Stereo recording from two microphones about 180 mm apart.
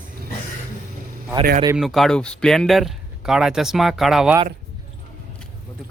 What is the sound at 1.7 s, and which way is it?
A man's voice, centre (ahead or behind).